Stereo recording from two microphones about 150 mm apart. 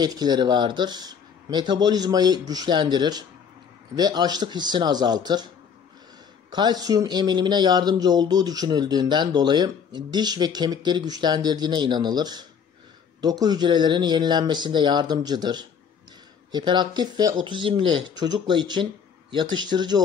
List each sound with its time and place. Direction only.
0.0 s speech: 25° right (ahead or behind)
6.5 s speech: 30° right (ahead or behind)